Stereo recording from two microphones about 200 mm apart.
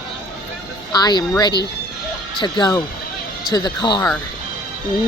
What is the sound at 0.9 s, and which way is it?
Speech, 20° left (ahead or behind).